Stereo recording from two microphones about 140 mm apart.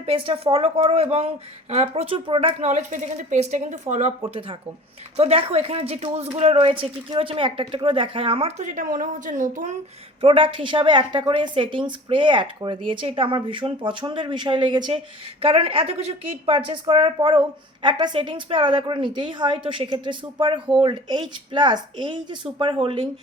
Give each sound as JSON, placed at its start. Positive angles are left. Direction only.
{"t": 0.0, "sound": "a woman's voice", "side_deg": -40}
{"t": 2.6, "sound": "a woman's voice", "side_deg": -60}
{"t": 4.3, "sound": "a woman's voice", "side_deg": -40}
{"t": 10.2, "sound": "a woman's voice", "side_deg": -40}